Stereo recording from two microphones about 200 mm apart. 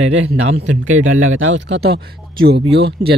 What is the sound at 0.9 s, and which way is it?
Speech, 85° right.